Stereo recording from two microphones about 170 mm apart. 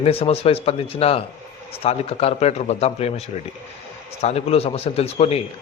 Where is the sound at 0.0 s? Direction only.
35° left (ahead or behind).